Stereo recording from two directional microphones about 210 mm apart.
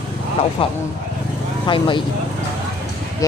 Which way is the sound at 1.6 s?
25° left (ahead or behind).